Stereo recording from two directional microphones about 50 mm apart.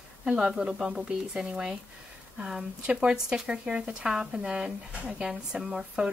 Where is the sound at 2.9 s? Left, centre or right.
Centre.